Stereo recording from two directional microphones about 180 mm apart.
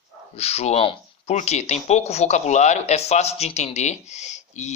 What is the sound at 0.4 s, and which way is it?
Speech, 35° left (ahead or behind).